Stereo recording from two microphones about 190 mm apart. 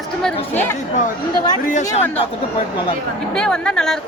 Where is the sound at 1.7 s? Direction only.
35° left (ahead or behind).